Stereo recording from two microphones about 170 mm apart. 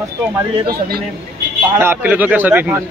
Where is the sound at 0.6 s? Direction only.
65° right (ahead or behind).